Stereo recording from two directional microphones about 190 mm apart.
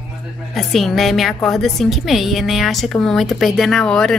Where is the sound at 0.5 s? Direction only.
Centre (ahead or behind).